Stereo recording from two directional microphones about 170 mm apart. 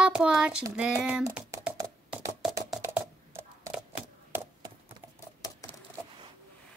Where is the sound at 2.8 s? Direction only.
15° right (ahead or behind).